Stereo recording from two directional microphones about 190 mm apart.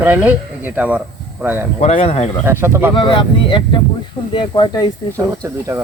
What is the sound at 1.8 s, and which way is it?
Speech, 35° left (ahead or behind).